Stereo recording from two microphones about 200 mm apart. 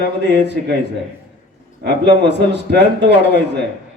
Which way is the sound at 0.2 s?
60° right (ahead or behind).